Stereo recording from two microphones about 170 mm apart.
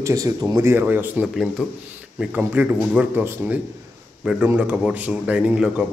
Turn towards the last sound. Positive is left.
turn(degrees=-5)  # may be behind; listen again after turning